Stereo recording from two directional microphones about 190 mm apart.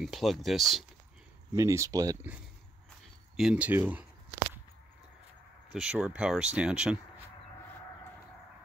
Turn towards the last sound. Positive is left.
turn(degrees=-5)  # may be behind; listen again after turning